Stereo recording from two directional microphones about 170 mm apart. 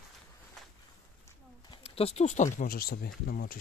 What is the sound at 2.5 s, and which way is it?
Speech, 60° left (ahead or behind).